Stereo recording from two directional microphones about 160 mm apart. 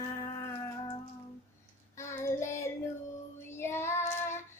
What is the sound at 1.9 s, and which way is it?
Child singing, 15° left (ahead or behind).